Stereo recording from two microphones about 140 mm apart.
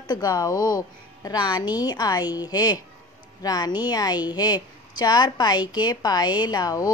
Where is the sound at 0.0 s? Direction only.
30° left (ahead or behind).